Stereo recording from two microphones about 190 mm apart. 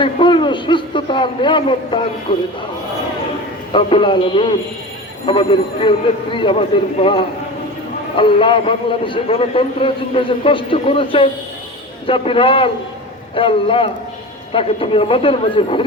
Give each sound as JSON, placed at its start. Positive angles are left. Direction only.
{"t": 0.0, "sound": "a man's voice", "side_deg": 25}
{"t": 3.7, "sound": "a man's voice", "side_deg": 30}